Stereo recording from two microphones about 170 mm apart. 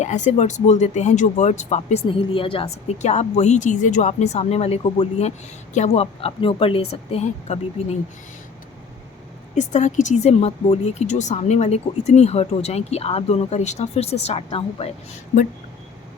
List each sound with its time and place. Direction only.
0.0 s speech: 45° left (ahead or behind)
2.0 s speech: 30° left (ahead or behind)
9.6 s speech: 45° left (ahead or behind)